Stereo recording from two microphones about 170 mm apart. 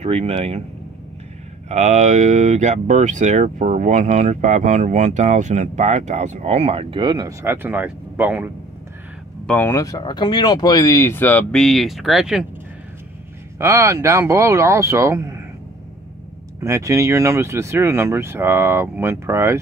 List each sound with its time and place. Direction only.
0.0 s speech: 35° right (ahead or behind)
1.7 s speech: 45° right (ahead or behind); by 8.5 s 10° right (ahead or behind)
9.5 s speech: 15° left (ahead or behind); by 12.4 s 5° right (ahead or behind)
13.6 s speech: 15° right (ahead or behind)
16.5 s speech: 15° right (ahead or behind)